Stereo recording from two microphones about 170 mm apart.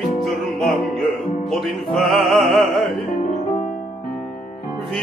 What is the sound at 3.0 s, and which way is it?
Music, 50° left (ahead or behind).